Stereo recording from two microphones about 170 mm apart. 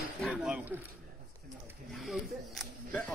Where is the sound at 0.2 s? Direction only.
5° right (ahead or behind).